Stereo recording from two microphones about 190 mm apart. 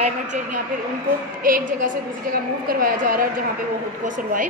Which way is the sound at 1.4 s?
45° right (ahead or behind).